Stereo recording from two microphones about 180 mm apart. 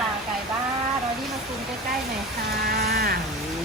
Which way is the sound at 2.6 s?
60° right (ahead or behind).